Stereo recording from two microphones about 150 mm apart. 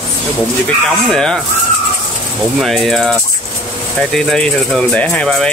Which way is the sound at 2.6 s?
Centre (ahead or behind).